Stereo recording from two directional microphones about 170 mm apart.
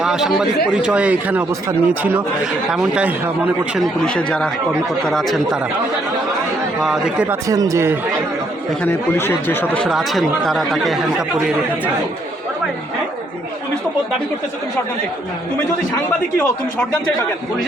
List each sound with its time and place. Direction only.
0.0 s speech: 5° right (ahead or behind)
4.0 s speech: 5° left (ahead or behind)
6.8 s speech: 5° right (ahead or behind)
7.4 s speech: 20° right (ahead or behind)
8.8 s speech: 15° left (ahead or behind)